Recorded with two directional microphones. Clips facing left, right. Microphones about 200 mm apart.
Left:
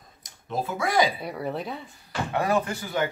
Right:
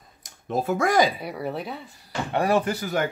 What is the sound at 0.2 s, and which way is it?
Speech, 50° right (ahead or behind).